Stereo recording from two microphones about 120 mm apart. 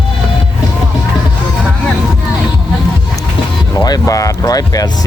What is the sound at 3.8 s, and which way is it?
Speech, 30° left (ahead or behind).